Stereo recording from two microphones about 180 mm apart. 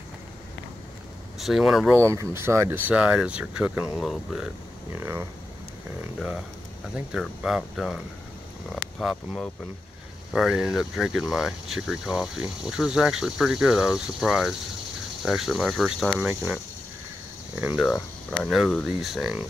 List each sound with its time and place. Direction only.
1.4 s speech: centre (ahead or behind)
2.0 s speech: 15° right (ahead or behind)
5.0 s speech: 15° right (ahead or behind)
6.1 s speech: 5° right (ahead or behind)